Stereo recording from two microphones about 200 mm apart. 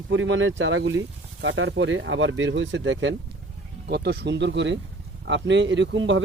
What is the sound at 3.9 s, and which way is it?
Speech, 55° right (ahead or behind).